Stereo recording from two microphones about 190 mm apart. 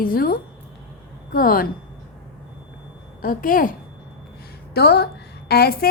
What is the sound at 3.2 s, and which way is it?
Speech, 45° left (ahead or behind).